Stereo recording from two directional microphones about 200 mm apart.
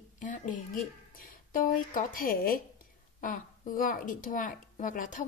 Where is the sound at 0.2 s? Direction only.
40° left (ahead or behind).